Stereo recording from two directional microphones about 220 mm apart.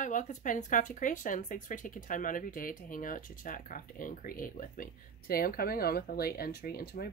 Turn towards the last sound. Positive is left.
turn(degrees=45)  # may be behind; listen again after turning